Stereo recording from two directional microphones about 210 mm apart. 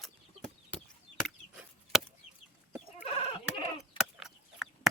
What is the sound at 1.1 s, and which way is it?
Chop, centre (ahead or behind).